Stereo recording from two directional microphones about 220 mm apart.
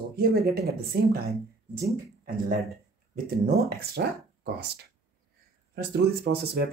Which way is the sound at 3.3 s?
45° right (ahead or behind).